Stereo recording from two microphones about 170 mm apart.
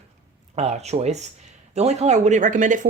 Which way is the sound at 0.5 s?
40° right (ahead or behind).